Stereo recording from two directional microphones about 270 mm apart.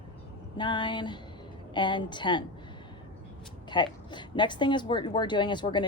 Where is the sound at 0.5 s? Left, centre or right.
Centre.